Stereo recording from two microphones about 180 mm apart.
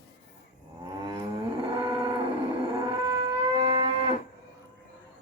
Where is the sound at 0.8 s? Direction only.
20° right (ahead or behind).